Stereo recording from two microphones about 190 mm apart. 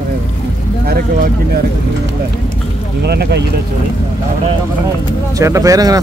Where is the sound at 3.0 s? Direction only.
60° right (ahead or behind).